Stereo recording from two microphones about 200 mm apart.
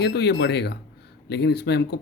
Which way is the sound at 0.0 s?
55° left (ahead or behind).